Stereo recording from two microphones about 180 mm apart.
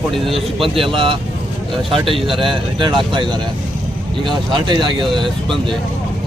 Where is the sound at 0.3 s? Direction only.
30° right (ahead or behind).